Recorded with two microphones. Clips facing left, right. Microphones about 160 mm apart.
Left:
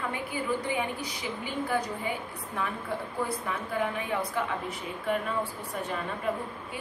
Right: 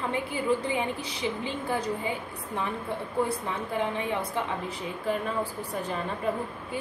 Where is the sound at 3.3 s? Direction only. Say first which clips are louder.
Right 1 dB; 25° right (ahead or behind).